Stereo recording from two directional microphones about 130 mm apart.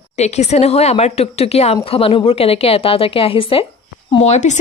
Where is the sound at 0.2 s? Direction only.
60° left (ahead or behind).